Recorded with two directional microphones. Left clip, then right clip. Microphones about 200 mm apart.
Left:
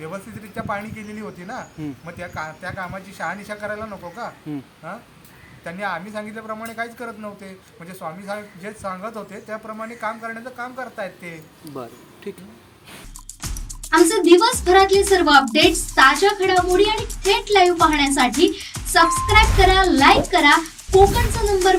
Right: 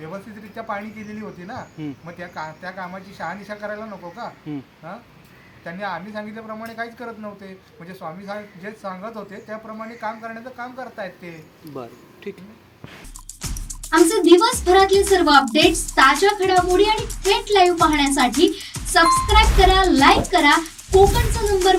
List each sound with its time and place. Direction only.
0.0 s speech: 5° left (ahead or behind)
13.7 s speech: centre (ahead or behind)